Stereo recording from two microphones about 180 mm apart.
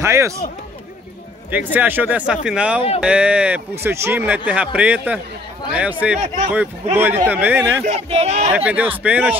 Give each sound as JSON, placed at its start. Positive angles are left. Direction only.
{"t": 0.0, "sound": "speech", "side_deg": -15}
{"t": 1.5, "sound": "speech", "side_deg": -10}
{"t": 6.2, "sound": "speech", "side_deg": -40}
{"t": 7.0, "sound": "speech", "side_deg": -10}
{"t": 7.8, "sound": "speech", "side_deg": -35}
{"t": 8.5, "sound": "speech", "side_deg": -10}